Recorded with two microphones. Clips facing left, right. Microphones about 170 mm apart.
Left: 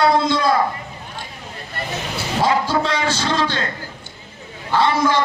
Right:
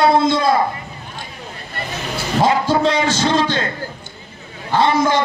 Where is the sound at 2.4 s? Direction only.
20° right (ahead or behind).